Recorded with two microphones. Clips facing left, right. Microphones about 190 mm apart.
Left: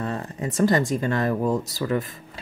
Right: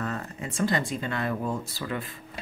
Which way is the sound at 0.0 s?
30° left (ahead or behind).